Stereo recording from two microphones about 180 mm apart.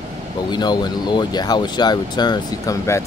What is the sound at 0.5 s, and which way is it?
Speech, 25° left (ahead or behind).